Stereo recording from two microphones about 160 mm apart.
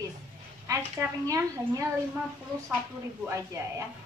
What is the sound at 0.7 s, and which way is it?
Speech, 20° right (ahead or behind).